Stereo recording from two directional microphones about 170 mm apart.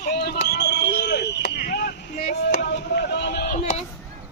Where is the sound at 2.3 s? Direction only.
75° left (ahead or behind).